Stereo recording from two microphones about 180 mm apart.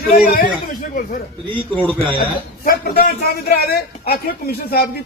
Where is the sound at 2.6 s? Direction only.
55° left (ahead or behind).